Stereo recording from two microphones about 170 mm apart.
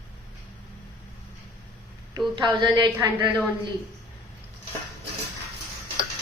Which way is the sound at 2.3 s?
25° right (ahead or behind).